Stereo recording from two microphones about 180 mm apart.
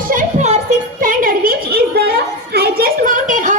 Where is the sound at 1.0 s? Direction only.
50° right (ahead or behind).